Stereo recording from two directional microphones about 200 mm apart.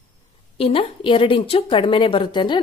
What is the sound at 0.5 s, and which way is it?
A woman's voice, 30° left (ahead or behind).